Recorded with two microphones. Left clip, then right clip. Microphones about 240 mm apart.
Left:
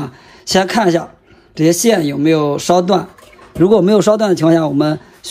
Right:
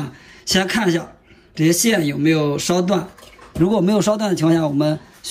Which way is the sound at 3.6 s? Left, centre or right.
Left.